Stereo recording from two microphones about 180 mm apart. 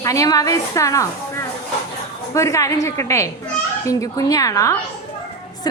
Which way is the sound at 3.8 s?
20° left (ahead or behind).